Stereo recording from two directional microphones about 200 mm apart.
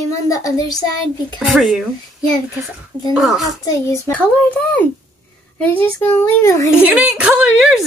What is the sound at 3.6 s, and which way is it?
A child's voice, 15° left (ahead or behind).